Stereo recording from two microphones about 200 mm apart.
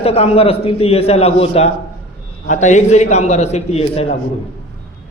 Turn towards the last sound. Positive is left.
turn(degrees=30)  # may be behind; listen again after turning